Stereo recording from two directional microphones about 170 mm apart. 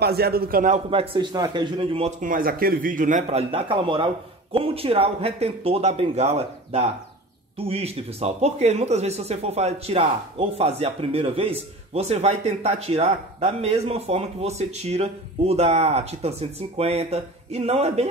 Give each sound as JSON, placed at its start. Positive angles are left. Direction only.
{"t": 0.0, "sound": "a man's voice", "side_deg": -65}
{"t": 0.8, "sound": "speech", "side_deg": -30}
{"t": 2.1, "sound": "speech", "side_deg": -55}